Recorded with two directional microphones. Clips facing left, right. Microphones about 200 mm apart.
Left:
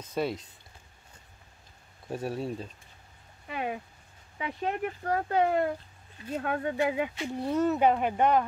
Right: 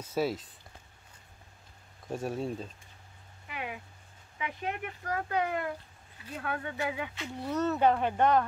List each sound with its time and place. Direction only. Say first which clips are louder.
0.0 s speech: even; 5° right (ahead or behind)
2.0 s speech: left 1 dB; centre (ahead or behind)
3.4 s a sound: left 6 dB; 35° left (ahead or behind)
4.4 s speech: left 5 dB; 35° left (ahead or behind)
7.6 s speech: left 1 dB; 15° left (ahead or behind)